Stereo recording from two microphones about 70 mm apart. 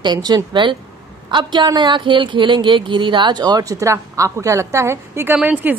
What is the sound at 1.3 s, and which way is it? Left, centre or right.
A woman's voice, right.